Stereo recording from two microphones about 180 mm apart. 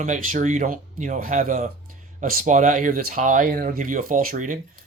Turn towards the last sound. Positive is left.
turn(degrees=-45)  # may be behind; listen again after turning